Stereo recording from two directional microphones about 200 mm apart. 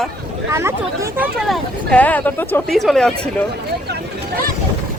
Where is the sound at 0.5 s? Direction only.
15° right (ahead or behind).